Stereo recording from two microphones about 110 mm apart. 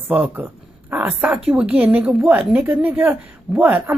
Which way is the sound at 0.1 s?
15° right (ahead or behind).